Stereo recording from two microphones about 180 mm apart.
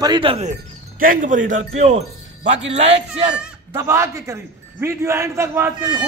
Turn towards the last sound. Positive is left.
turn(degrees=-15)  # may be behind; listen again after turning